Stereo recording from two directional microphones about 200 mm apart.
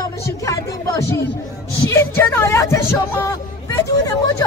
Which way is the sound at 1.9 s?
10° left (ahead or behind).